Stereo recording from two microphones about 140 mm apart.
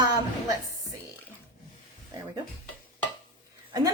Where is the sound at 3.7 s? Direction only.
25° right (ahead or behind).